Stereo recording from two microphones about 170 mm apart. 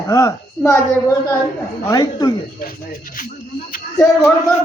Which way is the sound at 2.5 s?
55° left (ahead or behind).